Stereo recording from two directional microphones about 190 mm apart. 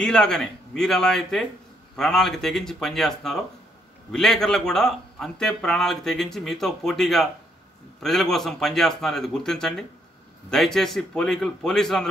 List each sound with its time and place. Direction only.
0.0 s a man's voice: 5° left (ahead or behind)